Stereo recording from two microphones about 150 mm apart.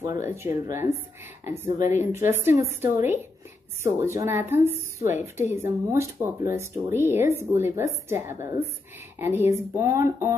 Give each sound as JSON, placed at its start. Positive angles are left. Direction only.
{"t": 0.0, "sound": "a woman's voice", "side_deg": -20}
{"t": 1.9, "sound": "a woman's voice", "side_deg": -15}